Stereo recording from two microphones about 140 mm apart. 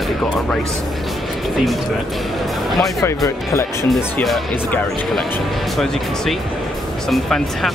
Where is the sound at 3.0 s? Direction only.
20° left (ahead or behind).